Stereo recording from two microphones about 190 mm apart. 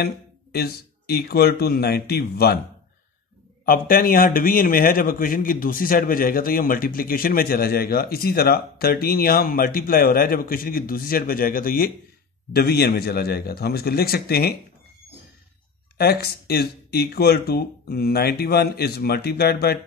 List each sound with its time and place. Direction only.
0.0 s speech: 55° left (ahead or behind)
3.6 s a man's voice: 50° left (ahead or behind)
16.0 s speech: 55° left (ahead or behind)